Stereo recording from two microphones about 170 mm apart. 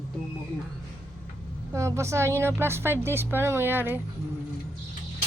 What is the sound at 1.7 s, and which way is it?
A woman's voice, 15° right (ahead or behind).